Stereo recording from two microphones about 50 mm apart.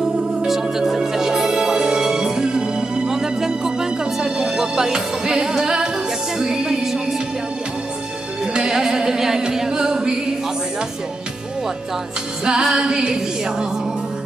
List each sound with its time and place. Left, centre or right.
0.5 s music: centre
8.5 s music: centre
9.4 s singing: centre
12.4 s music: centre